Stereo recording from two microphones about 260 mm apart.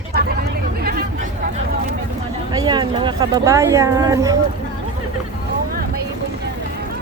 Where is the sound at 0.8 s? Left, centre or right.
Right.